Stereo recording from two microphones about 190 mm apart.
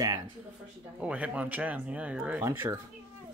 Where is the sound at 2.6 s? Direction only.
20° right (ahead or behind).